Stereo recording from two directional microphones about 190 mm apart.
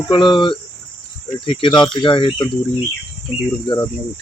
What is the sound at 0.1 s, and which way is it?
Speech, 25° left (ahead or behind).